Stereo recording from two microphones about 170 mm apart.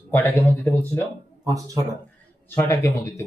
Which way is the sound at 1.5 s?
20° right (ahead or behind).